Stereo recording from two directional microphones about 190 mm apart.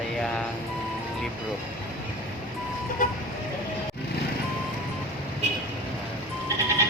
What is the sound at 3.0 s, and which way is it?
Speech, 45° left (ahead or behind).